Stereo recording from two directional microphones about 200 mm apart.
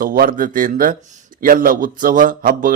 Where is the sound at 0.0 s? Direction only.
45° right (ahead or behind).